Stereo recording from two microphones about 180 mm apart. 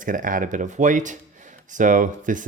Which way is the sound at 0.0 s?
50° right (ahead or behind).